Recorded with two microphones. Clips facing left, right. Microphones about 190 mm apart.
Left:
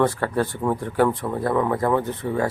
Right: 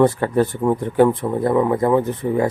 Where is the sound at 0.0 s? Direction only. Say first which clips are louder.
Right 5 dB; 20° right (ahead or behind).